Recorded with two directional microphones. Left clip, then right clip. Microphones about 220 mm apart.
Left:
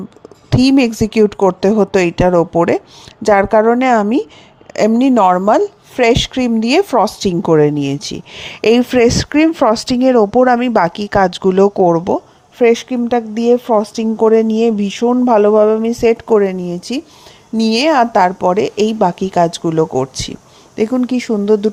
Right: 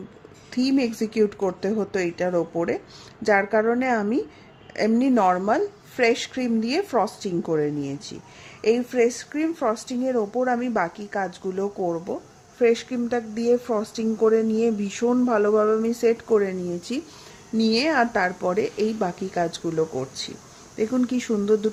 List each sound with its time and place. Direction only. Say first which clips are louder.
0.5 s a woman's voice: left 11 dB; 35° left (ahead or behind)